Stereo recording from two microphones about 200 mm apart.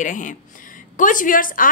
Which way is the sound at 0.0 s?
40° left (ahead or behind).